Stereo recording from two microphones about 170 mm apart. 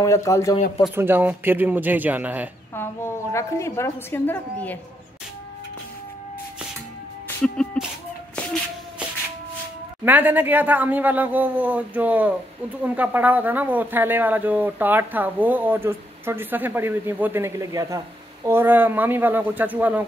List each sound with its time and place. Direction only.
0.0 s a woman's voice: 20° left (ahead or behind)
0.9 s speech: 10° right (ahead or behind)
2.7 s a woman's voice: 15° left (ahead or behind)
7.4 s music: 5° left (ahead or behind)
10.0 s speech: 10° right (ahead or behind)